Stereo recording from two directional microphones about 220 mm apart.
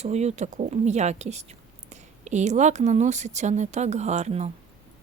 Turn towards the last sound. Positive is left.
turn(degrees=-30)  # may be behind; listen again after turning